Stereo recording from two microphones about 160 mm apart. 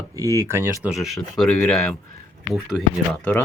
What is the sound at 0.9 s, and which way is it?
Speech, centre (ahead or behind).